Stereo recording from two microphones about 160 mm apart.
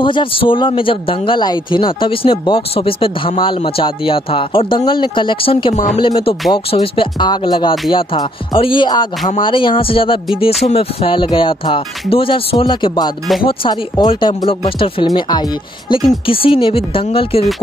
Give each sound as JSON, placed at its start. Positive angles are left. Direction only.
{"t": 0.0, "sound": "speech", "side_deg": 30}